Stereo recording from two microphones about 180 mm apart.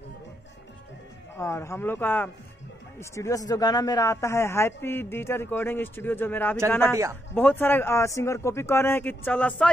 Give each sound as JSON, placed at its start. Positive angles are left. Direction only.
{"t": 1.4, "sound": "speech", "side_deg": 15}
{"t": 6.9, "sound": "a man's voice", "side_deg": -15}
{"t": 7.3, "sound": "speech", "side_deg": 10}